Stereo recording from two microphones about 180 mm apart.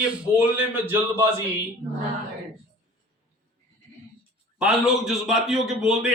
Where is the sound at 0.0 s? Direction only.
10° right (ahead or behind).